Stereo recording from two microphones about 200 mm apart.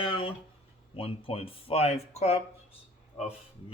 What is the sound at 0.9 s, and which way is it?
Speech, 30° left (ahead or behind).